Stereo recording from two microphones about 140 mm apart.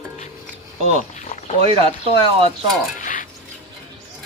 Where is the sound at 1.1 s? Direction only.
60° left (ahead or behind).